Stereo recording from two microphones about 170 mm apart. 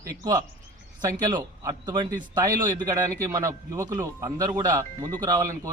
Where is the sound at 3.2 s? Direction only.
20° right (ahead or behind).